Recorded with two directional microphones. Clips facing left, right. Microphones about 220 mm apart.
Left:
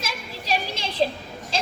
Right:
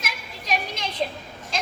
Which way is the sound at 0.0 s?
30° left (ahead or behind).